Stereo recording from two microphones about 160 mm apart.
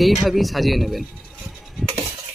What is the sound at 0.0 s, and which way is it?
Speech, centre (ahead or behind).